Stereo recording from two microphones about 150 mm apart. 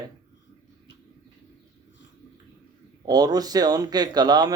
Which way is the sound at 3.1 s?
25° right (ahead or behind).